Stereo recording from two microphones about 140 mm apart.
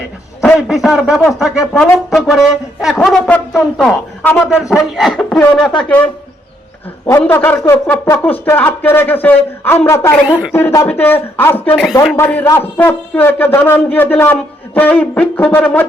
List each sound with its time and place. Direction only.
0.4 s a man's voice: centre (ahead or behind)
4.2 s speech: 10° left (ahead or behind)
4.7 s a man's voice: centre (ahead or behind)
7.1 s speech: 15° left (ahead or behind)